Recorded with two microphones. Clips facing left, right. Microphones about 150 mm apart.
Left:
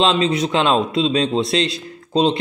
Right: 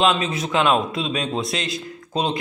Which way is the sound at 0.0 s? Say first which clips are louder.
Left 3 dB; 25° left (ahead or behind).